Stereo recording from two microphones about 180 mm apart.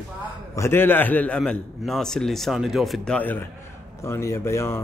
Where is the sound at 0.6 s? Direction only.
10° left (ahead or behind).